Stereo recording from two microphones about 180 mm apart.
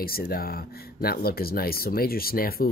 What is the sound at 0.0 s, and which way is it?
Speech, 55° left (ahead or behind).